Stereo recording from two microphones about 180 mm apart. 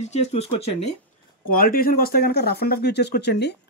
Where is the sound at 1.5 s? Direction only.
55° left (ahead or behind).